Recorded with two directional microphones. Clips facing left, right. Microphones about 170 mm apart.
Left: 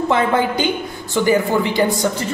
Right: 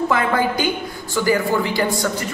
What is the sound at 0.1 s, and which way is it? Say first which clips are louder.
A man's voice: left 2 dB; 25° left (ahead or behind).